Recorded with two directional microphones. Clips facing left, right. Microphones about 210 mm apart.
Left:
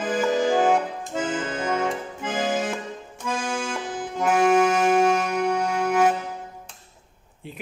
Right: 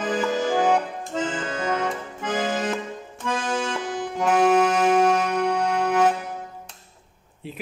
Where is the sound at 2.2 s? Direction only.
Centre (ahead or behind).